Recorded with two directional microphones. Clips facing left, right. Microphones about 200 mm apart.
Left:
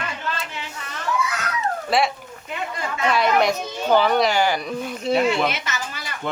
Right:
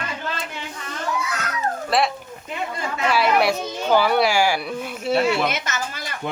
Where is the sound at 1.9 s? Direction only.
Centre (ahead or behind).